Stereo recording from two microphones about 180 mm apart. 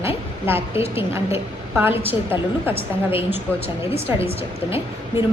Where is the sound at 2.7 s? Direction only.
30° left (ahead or behind).